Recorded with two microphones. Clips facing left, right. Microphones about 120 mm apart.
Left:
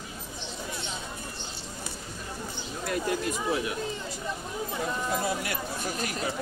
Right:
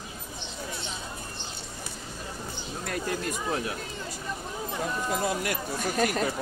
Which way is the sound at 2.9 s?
45° right (ahead or behind).